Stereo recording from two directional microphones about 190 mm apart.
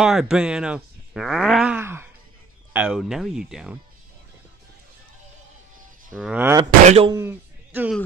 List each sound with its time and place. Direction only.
0.0 s speech: 5° right (ahead or behind)
6.1 s speech: 5° right (ahead or behind)
6.6 s speech: 30° right (ahead or behind)
7.2 s a man's voice: 10° right (ahead or behind)